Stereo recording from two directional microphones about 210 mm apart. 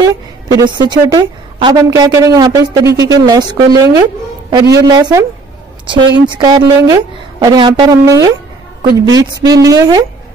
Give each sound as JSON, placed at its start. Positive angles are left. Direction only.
{"t": 0.0, "sound": "a woman's voice", "side_deg": -20}